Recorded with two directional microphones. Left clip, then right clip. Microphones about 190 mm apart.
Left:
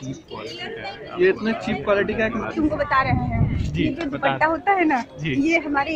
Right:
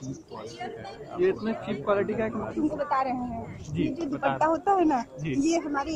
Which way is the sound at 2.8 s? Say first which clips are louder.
Left 7 dB; 5° right (ahead or behind).